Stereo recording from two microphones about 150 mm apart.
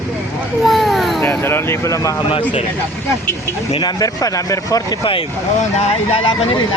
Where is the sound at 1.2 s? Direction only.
15° left (ahead or behind).